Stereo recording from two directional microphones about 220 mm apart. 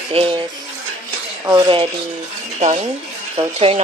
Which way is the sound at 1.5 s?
20° right (ahead or behind).